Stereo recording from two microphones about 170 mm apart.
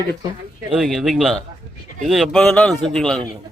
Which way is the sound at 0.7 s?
Centre (ahead or behind).